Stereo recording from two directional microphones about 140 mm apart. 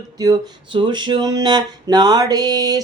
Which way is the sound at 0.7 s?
35° right (ahead or behind).